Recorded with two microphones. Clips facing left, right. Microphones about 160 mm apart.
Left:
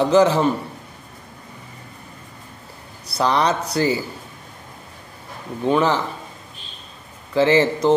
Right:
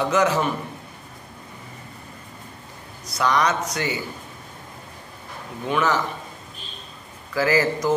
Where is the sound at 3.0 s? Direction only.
35° left (ahead or behind).